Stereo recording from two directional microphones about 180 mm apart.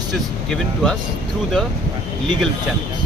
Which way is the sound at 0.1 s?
Centre (ahead or behind).